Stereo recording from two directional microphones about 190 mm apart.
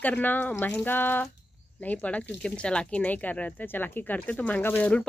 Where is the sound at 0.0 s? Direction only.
10° left (ahead or behind).